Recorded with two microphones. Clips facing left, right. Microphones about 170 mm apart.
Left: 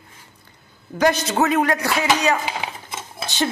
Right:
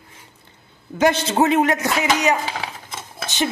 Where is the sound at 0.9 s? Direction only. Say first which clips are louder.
Right 1 dB; 25° right (ahead or behind).